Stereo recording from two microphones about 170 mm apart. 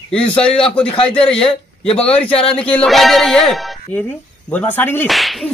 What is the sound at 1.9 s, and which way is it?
Speech, 35° left (ahead or behind).